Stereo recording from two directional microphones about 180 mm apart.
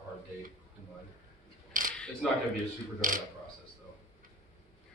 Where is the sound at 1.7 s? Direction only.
50° right (ahead or behind).